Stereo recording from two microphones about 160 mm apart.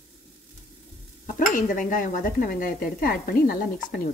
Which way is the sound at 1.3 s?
55° left (ahead or behind).